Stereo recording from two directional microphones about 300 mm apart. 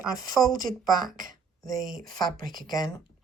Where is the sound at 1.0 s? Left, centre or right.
Right.